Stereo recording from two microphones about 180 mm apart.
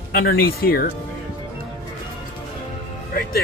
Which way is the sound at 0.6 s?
55° left (ahead or behind).